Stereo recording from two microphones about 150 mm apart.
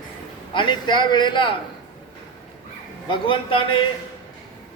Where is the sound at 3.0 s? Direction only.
35° left (ahead or behind).